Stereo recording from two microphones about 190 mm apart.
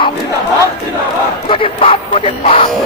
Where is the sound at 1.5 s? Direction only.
30° left (ahead or behind).